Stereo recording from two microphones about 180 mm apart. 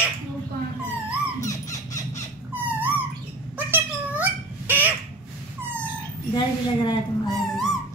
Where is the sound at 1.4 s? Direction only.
20° left (ahead or behind).